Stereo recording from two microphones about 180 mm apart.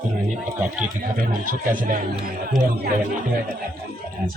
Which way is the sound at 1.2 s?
50° right (ahead or behind).